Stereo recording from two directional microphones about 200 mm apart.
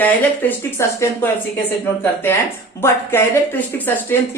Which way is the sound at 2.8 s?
10° left (ahead or behind).